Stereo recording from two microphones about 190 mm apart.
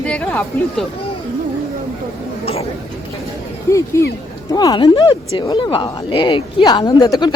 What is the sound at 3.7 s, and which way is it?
Speech, 15° left (ahead or behind).